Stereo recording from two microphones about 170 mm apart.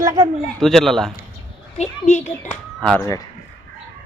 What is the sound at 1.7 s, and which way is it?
Speech, 40° left (ahead or behind).